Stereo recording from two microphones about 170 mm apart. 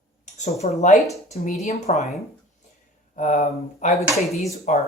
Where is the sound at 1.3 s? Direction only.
40° left (ahead or behind).